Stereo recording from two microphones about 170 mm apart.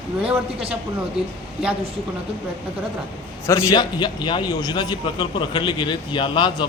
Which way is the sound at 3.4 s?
20° left (ahead or behind).